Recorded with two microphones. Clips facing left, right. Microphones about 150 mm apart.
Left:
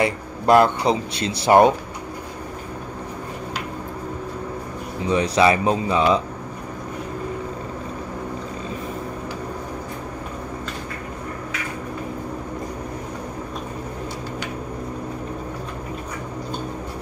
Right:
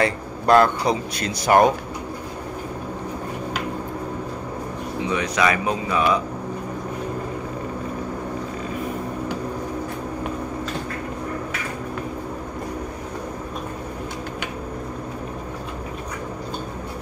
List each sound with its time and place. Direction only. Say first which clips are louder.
0.0 s speech: even; 20° left (ahead or behind)
5.0 s speech: left 4 dB; 30° left (ahead or behind)